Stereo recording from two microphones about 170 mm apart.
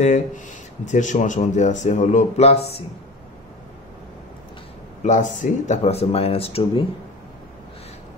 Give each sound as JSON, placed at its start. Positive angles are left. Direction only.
{"t": 0.0, "sound": "speech", "side_deg": 45}
{"t": 5.0, "sound": "speech", "side_deg": 45}
{"t": 5.8, "sound": "speech", "side_deg": 35}